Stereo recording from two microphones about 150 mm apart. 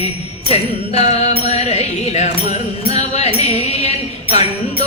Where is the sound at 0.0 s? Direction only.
40° left (ahead or behind).